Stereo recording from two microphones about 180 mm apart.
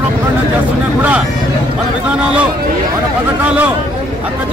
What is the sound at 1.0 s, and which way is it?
Speech, 10° right (ahead or behind).